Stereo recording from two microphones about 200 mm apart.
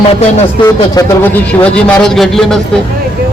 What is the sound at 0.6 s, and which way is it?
Speech, 20° left (ahead or behind).